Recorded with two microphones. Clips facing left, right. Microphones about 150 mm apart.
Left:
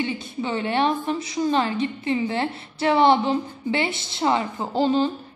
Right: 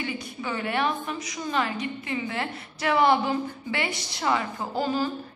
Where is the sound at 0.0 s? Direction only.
25° left (ahead or behind).